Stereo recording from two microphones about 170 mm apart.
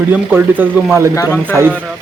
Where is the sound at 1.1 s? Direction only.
20° left (ahead or behind).